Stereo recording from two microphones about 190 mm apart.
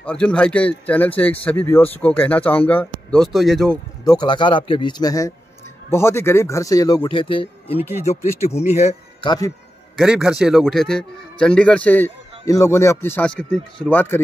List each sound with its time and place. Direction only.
0.0 s speech: 5° left (ahead or behind)
4.0 s speech: 20° left (ahead or behind); by 9.3 s 35° left (ahead or behind)
9.9 s a man's voice: 5° right (ahead or behind)